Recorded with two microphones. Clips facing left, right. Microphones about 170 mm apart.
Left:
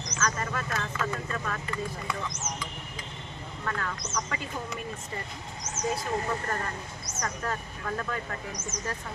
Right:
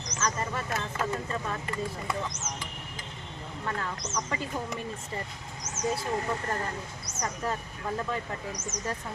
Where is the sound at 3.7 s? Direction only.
25° right (ahead or behind).